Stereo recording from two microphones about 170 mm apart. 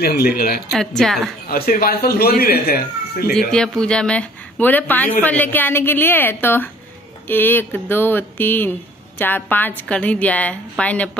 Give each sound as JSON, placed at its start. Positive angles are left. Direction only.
{"t": 0.0, "sound": "speech", "side_deg": 65}
{"t": 0.7, "sound": "a woman's voice", "side_deg": 0}
{"t": 1.5, "sound": "speech", "side_deg": 60}
{"t": 3.3, "sound": "speech", "side_deg": 5}